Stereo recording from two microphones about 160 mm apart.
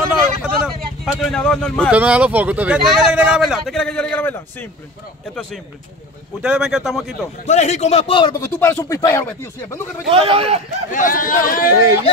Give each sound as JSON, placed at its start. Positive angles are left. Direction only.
{"t": 0.4, "sound": "speech", "side_deg": 0}
{"t": 1.9, "sound": "speech", "side_deg": -10}
{"t": 7.4, "sound": "a man's voice", "side_deg": 45}
{"t": 8.5, "sound": "speech", "side_deg": 15}
{"t": 10.0, "sound": "speech", "side_deg": -40}
{"t": 10.9, "sound": "speech", "side_deg": 55}